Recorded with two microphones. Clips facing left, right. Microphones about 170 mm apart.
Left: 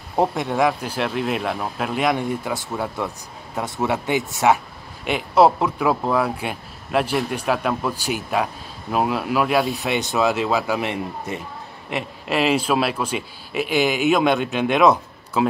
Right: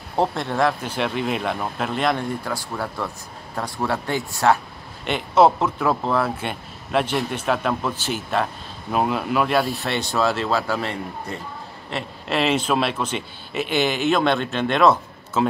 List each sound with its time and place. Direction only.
0.1 s speech: centre (ahead or behind)
2.4 s speech: 20° left (ahead or behind); by 10.8 s centre (ahead or behind)
10.8 s speech: 20° left (ahead or behind)
12.3 s speech: 5° left (ahead or behind)